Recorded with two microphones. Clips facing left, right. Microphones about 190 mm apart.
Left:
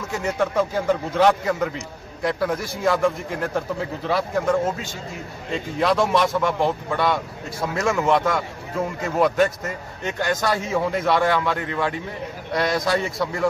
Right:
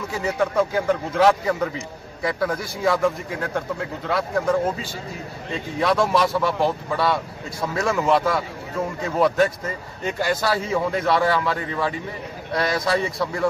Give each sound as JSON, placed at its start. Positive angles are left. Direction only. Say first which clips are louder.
{"t": 0.2, "sound": "a man's voice", "louder": "right 1 dB", "side_deg": 0}